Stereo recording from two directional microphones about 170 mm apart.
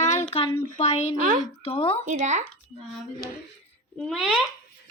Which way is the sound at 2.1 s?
45° right (ahead or behind).